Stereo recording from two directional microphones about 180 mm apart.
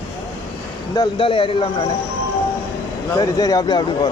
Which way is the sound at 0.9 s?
30° left (ahead or behind).